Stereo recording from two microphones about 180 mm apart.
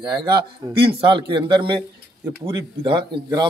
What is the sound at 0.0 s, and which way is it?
Speech, 25° right (ahead or behind).